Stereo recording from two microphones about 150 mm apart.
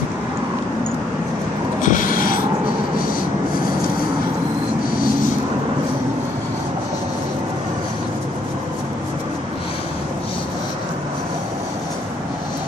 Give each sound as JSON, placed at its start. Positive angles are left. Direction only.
{"t": 1.8, "sound": "rub", "side_deg": 60}